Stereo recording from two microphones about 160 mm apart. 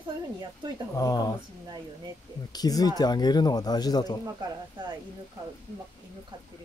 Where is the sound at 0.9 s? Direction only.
25° left (ahead or behind).